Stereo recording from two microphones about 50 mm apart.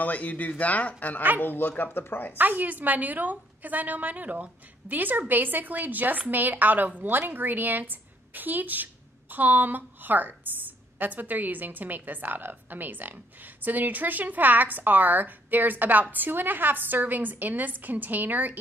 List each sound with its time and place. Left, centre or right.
0.0 s speech: left
1.4 s speech: left
2.3 s a woman's voice: right